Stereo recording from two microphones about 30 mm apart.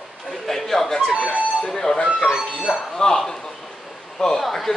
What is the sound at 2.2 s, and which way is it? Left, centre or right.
Speech, right.